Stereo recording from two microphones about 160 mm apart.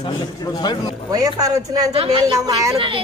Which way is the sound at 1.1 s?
20° right (ahead or behind).